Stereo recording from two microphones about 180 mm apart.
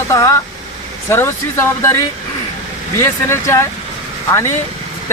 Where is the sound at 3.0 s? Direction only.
15° left (ahead or behind).